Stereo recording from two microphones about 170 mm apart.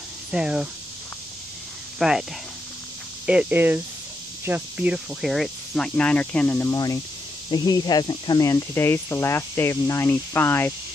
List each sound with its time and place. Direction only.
0.3 s speech: 5° right (ahead or behind)
2.0 s speech: centre (ahead or behind)
3.3 s speech: 10° right (ahead or behind); by 10.7 s 15° left (ahead or behind)